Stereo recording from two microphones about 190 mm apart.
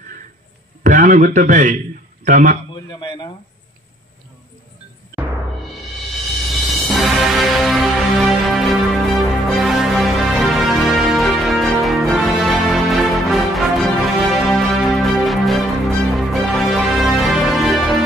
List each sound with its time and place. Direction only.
0.8 s a man's voice: 45° right (ahead or behind)
2.7 s speech: 25° left (ahead or behind)
6.5 s music: centre (ahead or behind)